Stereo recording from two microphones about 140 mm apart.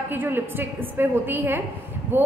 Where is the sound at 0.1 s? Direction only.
15° right (ahead or behind).